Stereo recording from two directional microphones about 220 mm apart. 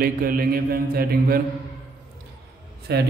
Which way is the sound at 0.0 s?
40° right (ahead or behind).